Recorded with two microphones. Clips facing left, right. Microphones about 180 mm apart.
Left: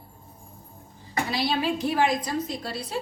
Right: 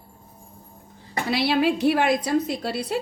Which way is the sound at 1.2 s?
70° right (ahead or behind).